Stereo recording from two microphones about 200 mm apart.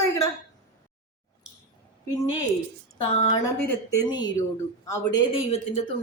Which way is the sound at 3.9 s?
20° left (ahead or behind).